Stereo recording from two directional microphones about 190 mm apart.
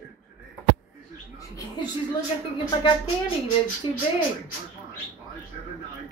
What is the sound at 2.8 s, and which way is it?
Speech, 25° left (ahead or behind).